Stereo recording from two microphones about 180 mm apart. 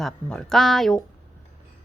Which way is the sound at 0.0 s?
5° left (ahead or behind).